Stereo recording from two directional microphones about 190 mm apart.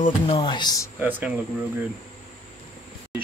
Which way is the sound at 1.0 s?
10° right (ahead or behind).